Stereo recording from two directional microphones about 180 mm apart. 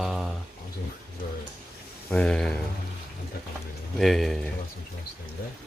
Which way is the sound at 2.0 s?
5° left (ahead or behind).